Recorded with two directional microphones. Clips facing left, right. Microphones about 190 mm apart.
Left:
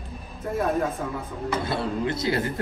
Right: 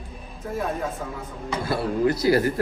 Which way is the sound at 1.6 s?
25° left (ahead or behind).